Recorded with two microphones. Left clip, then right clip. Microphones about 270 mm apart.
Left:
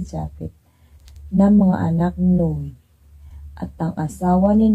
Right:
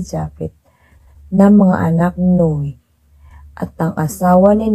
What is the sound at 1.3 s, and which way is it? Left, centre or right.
Speech, right.